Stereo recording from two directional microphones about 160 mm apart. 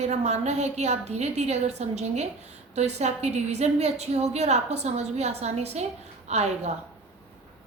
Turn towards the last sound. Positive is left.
turn(degrees=-45)  # may be behind; listen again after turning